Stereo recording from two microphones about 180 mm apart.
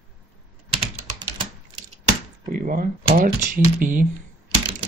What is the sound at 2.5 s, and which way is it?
Speech, 50° right (ahead or behind).